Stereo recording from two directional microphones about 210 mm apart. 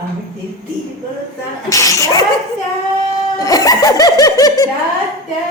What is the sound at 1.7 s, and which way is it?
Speech, 15° left (ahead or behind).